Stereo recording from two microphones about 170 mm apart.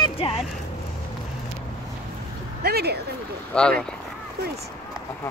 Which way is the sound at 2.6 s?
70° right (ahead or behind).